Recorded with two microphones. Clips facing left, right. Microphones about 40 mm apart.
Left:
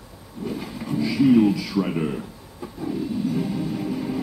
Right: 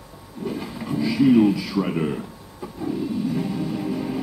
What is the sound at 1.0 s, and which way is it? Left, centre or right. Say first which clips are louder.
Speech: right 1 dB; centre.